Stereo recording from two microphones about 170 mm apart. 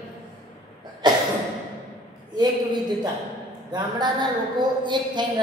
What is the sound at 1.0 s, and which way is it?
Speech, 25° right (ahead or behind).